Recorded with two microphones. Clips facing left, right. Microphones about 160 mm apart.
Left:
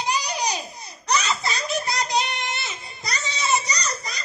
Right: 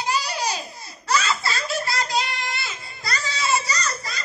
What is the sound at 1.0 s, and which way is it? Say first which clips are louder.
Baby laughter: right 1 dB; 20° left (ahead or behind).